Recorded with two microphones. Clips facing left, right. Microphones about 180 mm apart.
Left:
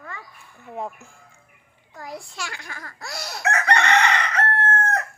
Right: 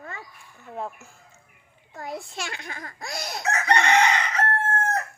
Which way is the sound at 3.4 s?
65° left (ahead or behind).